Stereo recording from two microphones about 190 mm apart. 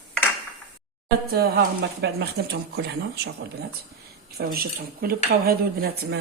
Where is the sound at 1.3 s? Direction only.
55° right (ahead or behind).